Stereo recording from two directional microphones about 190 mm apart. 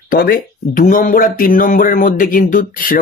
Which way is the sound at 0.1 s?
50° left (ahead or behind).